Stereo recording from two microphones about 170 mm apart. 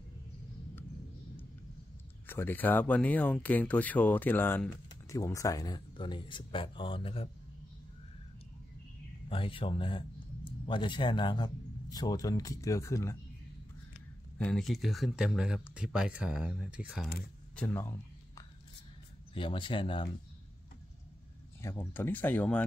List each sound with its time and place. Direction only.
2.2 s speech: 10° left (ahead or behind); by 7.2 s 35° left (ahead or behind)
9.3 s a man's voice: 30° left (ahead or behind)
14.4 s speech: centre (ahead or behind)
17.6 s a sound: 15° left (ahead or behind)
19.3 s a man's voice: 30° left (ahead or behind)
21.5 s speech: 15° left (ahead or behind)